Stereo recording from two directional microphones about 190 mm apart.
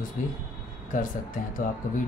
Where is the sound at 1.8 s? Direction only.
45° left (ahead or behind).